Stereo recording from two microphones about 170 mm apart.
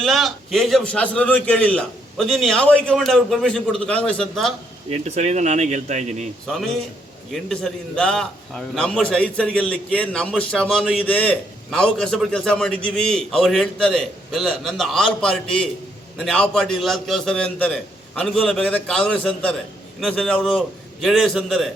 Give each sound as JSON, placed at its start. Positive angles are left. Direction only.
{"t": 0.0, "sound": "a man's voice", "side_deg": 0}
{"t": 4.9, "sound": "speech", "side_deg": -40}
{"t": 7.3, "sound": "a man's voice", "side_deg": 0}